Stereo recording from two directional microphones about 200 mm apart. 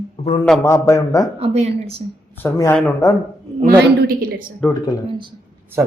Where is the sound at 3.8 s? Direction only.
50° right (ahead or behind).